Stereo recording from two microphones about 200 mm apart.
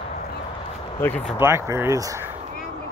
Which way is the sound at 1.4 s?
15° right (ahead or behind).